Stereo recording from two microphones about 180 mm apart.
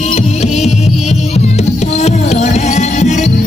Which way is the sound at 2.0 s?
35° left (ahead or behind).